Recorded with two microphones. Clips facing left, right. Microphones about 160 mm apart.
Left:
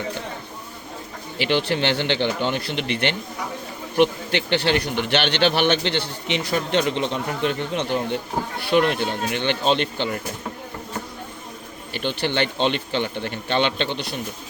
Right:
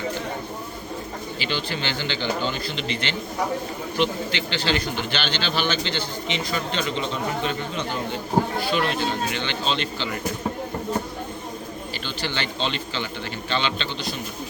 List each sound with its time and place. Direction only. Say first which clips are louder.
1.4 s a man's voice: left 8 dB; 65° left (ahead or behind)
12.0 s a man's voice: left 8 dB; 60° left (ahead or behind)